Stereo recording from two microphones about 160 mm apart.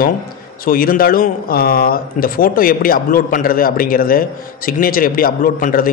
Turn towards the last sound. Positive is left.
turn(degrees=60)  # may be behind; listen again after turning